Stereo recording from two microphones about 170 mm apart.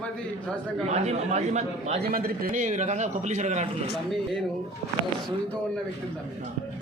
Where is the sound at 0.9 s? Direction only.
40° right (ahead or behind).